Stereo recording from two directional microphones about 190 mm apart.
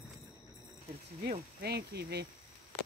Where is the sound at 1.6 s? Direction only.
60° right (ahead or behind).